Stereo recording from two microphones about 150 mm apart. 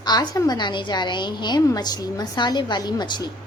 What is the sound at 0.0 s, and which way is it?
A woman's voice, 25° left (ahead or behind).